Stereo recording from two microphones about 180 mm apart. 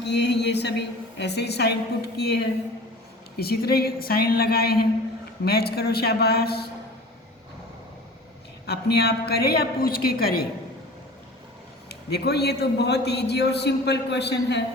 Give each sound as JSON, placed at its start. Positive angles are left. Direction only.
{"t": 0.0, "sound": "a man's voice", "side_deg": 70}
{"t": 8.6, "sound": "a woman's voice", "side_deg": 65}
{"t": 11.9, "sound": "a man's voice", "side_deg": 65}